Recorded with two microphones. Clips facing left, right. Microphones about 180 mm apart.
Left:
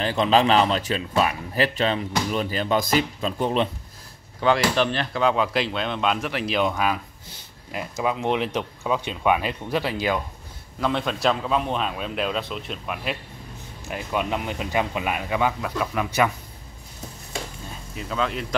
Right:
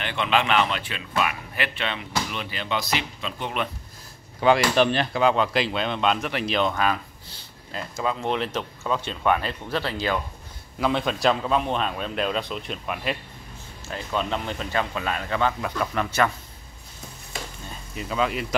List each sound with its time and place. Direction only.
0.0 s a man's voice: 35° left (ahead or behind)
4.4 s speech: 10° right (ahead or behind)
5.2 s a man's voice: centre (ahead or behind)
10.8 s a man's voice: centre (ahead or behind)
13.8 s speech: 15° left (ahead or behind)
17.9 s speech: 5° right (ahead or behind)